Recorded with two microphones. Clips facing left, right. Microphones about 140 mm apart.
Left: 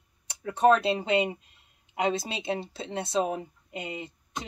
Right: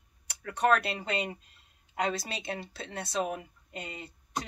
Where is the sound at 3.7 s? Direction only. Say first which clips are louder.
Left 5 dB; 15° left (ahead or behind).